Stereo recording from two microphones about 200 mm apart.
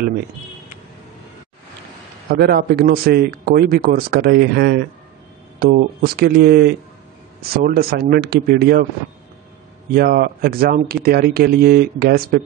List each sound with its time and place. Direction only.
2.2 s a man's voice: 50° right (ahead or behind)
9.9 s a man's voice: 50° right (ahead or behind)